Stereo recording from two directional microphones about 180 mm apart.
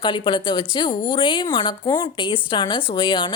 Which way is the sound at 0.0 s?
25° left (ahead or behind).